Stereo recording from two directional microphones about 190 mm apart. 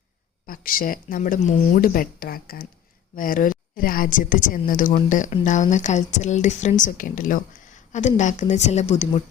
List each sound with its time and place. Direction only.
0.4 s a woman's voice: 50° left (ahead or behind)